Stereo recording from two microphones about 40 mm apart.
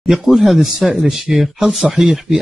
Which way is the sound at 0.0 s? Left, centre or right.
Centre.